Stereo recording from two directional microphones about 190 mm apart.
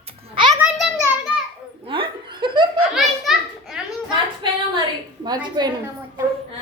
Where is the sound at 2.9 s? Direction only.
Centre (ahead or behind).